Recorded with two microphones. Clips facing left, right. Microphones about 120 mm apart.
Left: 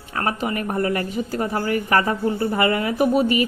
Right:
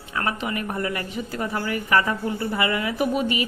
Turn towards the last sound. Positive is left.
turn(degrees=40)  # may be behind; listen again after turning